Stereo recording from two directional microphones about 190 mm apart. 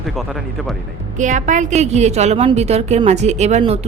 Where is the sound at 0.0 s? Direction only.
Centre (ahead or behind).